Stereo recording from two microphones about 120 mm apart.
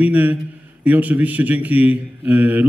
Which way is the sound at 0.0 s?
15° right (ahead or behind).